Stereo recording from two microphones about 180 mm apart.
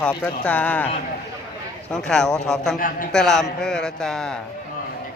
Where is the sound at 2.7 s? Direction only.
50° left (ahead or behind).